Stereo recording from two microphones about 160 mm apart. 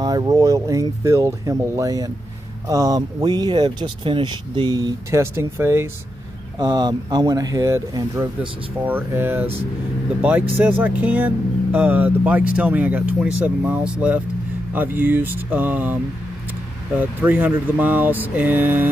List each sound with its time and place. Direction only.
0.0 s speech: 25° right (ahead or behind)
10.5 s speech: 10° right (ahead or behind)